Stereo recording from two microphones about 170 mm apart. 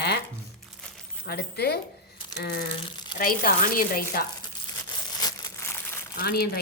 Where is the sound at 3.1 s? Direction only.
55° left (ahead or behind).